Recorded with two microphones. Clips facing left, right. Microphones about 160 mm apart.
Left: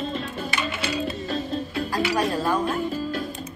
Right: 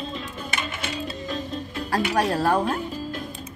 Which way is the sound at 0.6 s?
50° right (ahead or behind).